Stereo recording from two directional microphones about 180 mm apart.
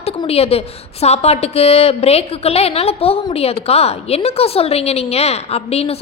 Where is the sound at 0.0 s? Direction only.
35° left (ahead or behind).